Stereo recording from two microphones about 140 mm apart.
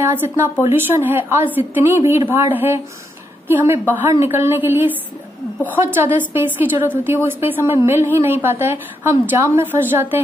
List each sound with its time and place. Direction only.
0.0 s a woman's voice: 15° right (ahead or behind)